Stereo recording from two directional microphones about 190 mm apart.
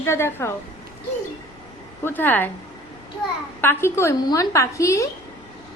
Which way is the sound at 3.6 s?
10° left (ahead or behind).